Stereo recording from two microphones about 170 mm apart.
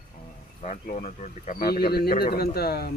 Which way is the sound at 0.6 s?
50° left (ahead or behind).